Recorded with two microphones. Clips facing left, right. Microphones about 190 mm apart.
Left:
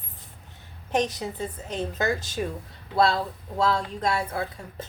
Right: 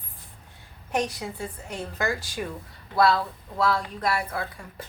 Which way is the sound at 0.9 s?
20° left (ahead or behind).